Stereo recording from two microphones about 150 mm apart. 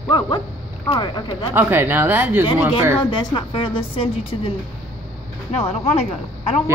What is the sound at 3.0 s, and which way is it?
A woman's voice, 30° left (ahead or behind).